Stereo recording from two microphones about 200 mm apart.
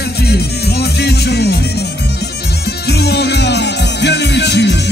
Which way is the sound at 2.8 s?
55° left (ahead or behind).